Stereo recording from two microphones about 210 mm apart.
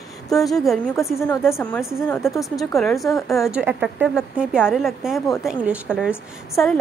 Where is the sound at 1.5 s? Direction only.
Centre (ahead or behind).